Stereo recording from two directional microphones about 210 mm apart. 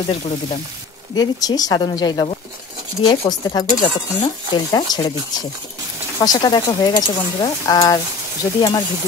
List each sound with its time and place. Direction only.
1.1 s speech: 20° left (ahead or behind)